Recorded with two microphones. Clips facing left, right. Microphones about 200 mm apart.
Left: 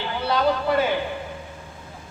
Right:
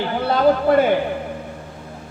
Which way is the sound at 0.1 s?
50° right (ahead or behind).